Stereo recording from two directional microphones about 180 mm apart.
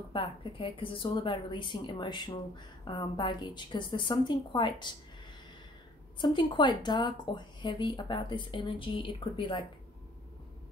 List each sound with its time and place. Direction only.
0.1 s a woman's voice: 30° left (ahead or behind)
6.1 s a woman's voice: 25° left (ahead or behind)